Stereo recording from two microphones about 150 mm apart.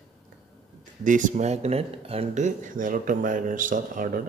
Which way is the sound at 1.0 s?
60° right (ahead or behind).